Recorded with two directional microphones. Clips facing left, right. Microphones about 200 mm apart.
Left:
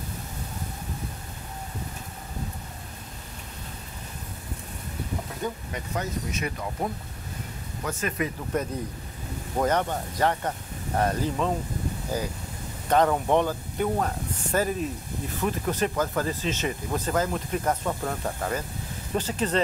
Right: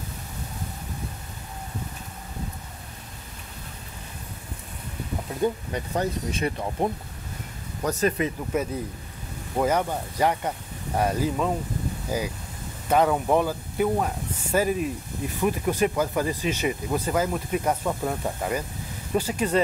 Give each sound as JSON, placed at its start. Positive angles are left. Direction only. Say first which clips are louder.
{"t": 5.7, "sound": "speech", "louder": "right 5 dB", "side_deg": -30}
{"t": 8.5, "sound": "speech", "louder": "even", "side_deg": -5}